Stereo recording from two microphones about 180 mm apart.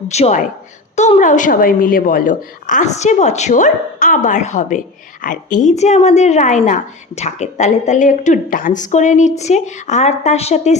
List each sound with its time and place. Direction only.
0.1 s a woman's voice: 40° left (ahead or behind)